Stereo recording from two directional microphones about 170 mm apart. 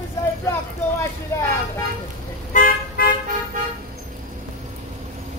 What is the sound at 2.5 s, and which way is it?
Music, 55° left (ahead or behind).